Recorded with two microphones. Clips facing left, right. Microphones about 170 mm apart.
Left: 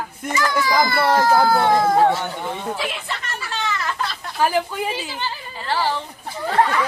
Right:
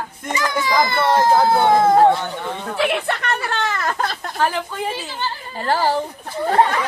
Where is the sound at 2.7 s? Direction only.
60° right (ahead or behind).